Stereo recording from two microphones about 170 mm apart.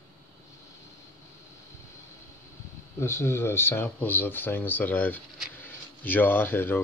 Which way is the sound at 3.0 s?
15° left (ahead or behind).